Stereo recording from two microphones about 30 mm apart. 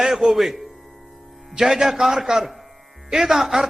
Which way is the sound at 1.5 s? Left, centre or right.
Centre.